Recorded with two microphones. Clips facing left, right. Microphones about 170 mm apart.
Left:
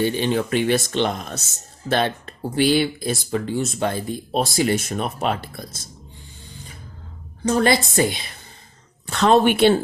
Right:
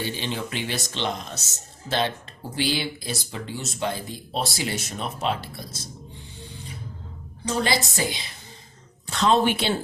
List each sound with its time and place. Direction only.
0.0 s speech: 50° left (ahead or behind)
7.4 s speech: 55° left (ahead or behind)